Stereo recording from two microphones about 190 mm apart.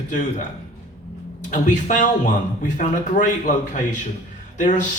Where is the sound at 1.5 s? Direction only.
40° left (ahead or behind).